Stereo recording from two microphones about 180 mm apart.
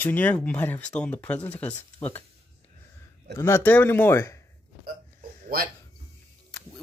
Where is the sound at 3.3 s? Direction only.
15° left (ahead or behind).